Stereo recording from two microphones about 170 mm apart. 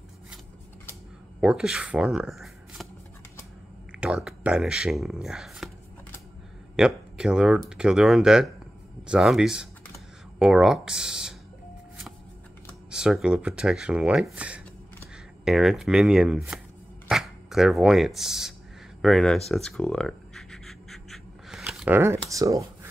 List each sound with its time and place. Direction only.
1.4 s speech: 5° right (ahead or behind)
4.0 s speech: 5° right (ahead or behind)
6.8 s speech: 5° right (ahead or behind)
12.9 s speech: 5° right (ahead or behind)
19.5 s writing: 5° left (ahead or behind); by 22.2 s 15° right (ahead or behind)
22.3 s speech: 20° right (ahead or behind)